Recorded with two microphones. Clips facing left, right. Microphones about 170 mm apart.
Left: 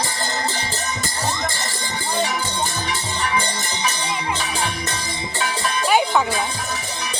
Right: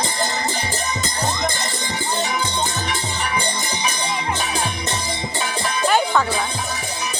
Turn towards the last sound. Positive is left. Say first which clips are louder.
# even
turn(degrees=15)  # may be behind; listen again after turning